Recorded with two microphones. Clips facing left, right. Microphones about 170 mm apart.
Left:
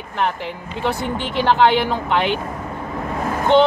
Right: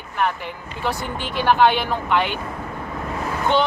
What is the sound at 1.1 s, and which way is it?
Speech, 20° left (ahead or behind).